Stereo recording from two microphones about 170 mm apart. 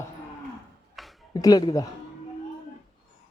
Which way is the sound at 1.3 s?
20° left (ahead or behind).